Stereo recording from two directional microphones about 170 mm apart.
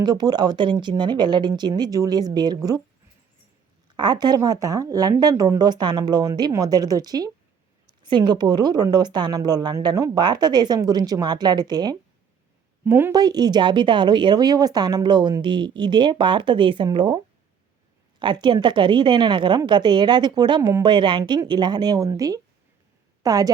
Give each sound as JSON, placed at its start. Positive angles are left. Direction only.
{"t": 0.0, "sound": "speech", "side_deg": -25}
{"t": 3.9, "sound": "speech", "side_deg": -25}
{"t": 12.8, "sound": "speech", "side_deg": -15}
{"t": 18.2, "sound": "a woman's voice", "side_deg": -25}